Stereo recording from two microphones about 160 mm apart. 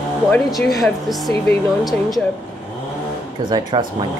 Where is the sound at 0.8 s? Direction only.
Centre (ahead or behind).